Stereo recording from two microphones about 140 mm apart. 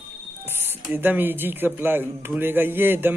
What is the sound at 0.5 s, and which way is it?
A man's voice, 15° right (ahead or behind).